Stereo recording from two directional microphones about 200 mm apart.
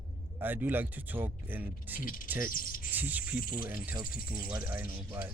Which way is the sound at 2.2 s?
10° right (ahead or behind).